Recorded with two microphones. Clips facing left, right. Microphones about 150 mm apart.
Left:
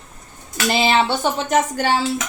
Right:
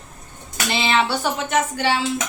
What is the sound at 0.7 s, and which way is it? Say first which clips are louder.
Speech: left 3 dB; 40° left (ahead or behind).